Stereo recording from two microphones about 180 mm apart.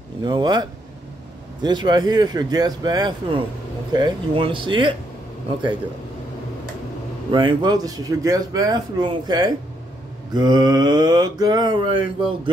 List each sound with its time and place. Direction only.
0.2 s speech: 25° right (ahead or behind)
7.3 s speech: 25° right (ahead or behind)